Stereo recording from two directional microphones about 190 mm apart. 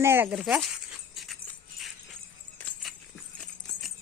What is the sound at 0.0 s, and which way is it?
Speech, 10° right (ahead or behind).